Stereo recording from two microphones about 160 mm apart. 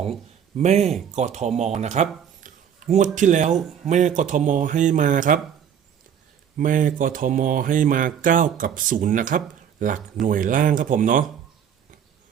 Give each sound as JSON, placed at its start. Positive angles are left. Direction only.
{"t": 0.5, "sound": "speech", "side_deg": -45}
{"t": 2.4, "sound": "a sound", "side_deg": -50}
{"t": 3.2, "sound": "speech", "side_deg": -50}
{"t": 6.6, "sound": "speech", "side_deg": -55}